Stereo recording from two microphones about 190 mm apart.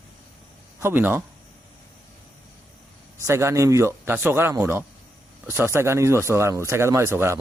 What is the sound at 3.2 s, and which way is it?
Speech, 15° right (ahead or behind).